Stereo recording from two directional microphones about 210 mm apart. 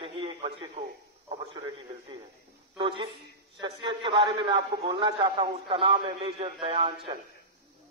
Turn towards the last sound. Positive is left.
turn(degrees=-25)  # may be behind; listen again after turning